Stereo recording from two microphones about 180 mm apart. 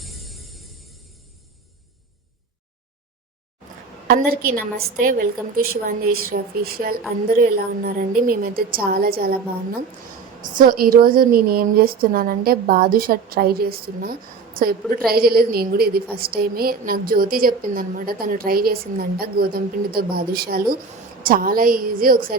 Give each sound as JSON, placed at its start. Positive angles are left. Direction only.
{"t": 0.0, "sound": "music", "side_deg": 0}
{"t": 4.1, "sound": "a woman's voice", "side_deg": -55}
{"t": 10.4, "sound": "a woman's voice", "side_deg": -50}